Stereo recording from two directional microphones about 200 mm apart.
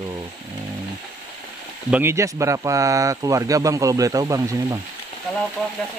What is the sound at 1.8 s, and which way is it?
Speech, 10° right (ahead or behind).